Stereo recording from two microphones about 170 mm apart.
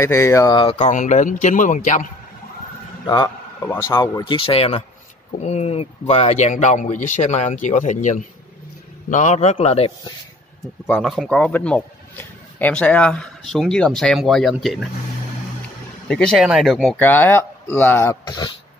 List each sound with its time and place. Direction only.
0.0 s speech: 15° left (ahead or behind)
0.7 s speech: 45° left (ahead or behind)
3.6 s a man's voice: 15° left (ahead or behind); by 9.9 s 35° left (ahead or behind)
10.6 s speech: centre (ahead or behind)
16.1 s speech: 5° left (ahead or behind); by 18.6 s 25° left (ahead or behind)